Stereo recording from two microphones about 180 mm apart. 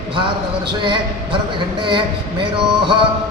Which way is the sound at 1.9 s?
25° right (ahead or behind).